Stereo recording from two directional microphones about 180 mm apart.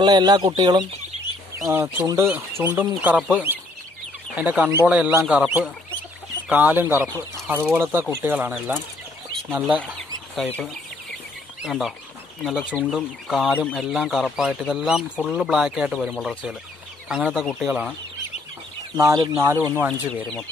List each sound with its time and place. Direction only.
0.0 s speech: 25° right (ahead or behind); by 9.9 s 5° right (ahead or behind)
10.3 s speech: 10° left (ahead or behind)
11.6 s speech: centre (ahead or behind)
18.9 s speech: 20° right (ahead or behind)
19.9 s speech: 5° left (ahead or behind)